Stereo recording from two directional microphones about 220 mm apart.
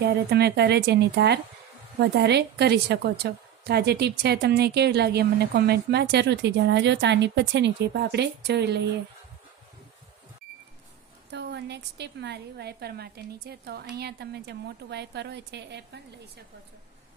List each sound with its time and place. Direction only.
0.0 s a woman's voice: 45° right (ahead or behind)
11.3 s a woman's voice: 50° right (ahead or behind)